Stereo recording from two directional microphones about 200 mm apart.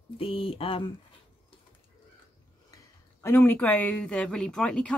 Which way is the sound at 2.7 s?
10° left (ahead or behind).